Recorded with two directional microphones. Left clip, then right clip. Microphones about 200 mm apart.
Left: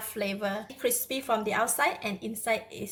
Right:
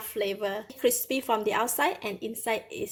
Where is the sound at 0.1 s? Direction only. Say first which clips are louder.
Right 2 dB; 35° right (ahead or behind).